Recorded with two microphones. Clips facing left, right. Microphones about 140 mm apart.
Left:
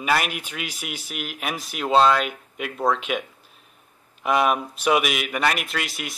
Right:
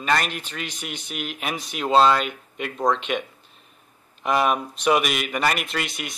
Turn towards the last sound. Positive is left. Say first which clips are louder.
# right 1 dB
turn(degrees=0)  # may be behind; listen again after turning